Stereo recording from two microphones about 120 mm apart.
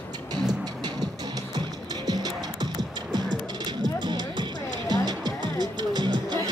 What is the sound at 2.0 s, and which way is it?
Music, 35° right (ahead or behind).